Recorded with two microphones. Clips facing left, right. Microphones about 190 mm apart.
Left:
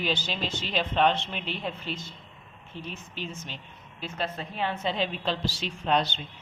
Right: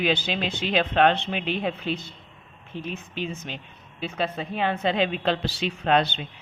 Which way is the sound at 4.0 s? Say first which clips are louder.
Right 5 dB; 65° right (ahead or behind).